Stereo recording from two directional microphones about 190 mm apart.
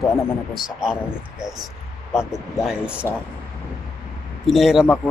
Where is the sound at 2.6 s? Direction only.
5° right (ahead or behind).